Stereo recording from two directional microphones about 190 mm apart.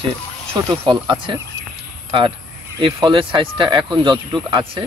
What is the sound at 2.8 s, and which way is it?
Speech, 25° right (ahead or behind).